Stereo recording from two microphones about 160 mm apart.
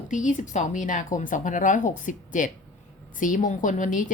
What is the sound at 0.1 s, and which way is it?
Speech, 50° left (ahead or behind).